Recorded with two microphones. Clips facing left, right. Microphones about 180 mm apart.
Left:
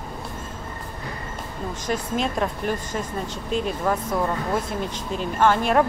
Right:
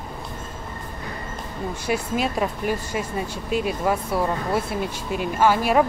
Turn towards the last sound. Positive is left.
turn(degrees=-5)  # may be behind; listen again after turning